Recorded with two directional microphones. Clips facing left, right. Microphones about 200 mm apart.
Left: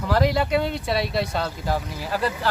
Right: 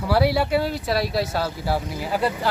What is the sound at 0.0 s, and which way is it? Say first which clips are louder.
Speech: right 1 dB; 10° right (ahead or behind).